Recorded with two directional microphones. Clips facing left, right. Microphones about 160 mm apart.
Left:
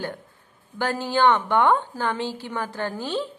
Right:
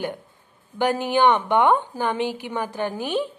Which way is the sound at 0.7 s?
15° right (ahead or behind).